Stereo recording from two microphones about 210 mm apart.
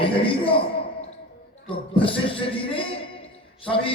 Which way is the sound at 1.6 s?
25° left (ahead or behind).